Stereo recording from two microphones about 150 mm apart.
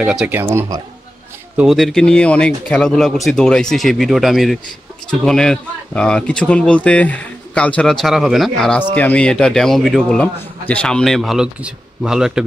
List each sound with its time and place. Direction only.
0.0 s speech: 5° right (ahead or behind)
0.4 s speech: 15° right (ahead or behind)
1.6 s speech: centre (ahead or behind)